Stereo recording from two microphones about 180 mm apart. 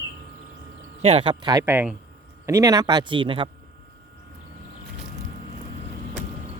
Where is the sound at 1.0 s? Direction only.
30° right (ahead or behind).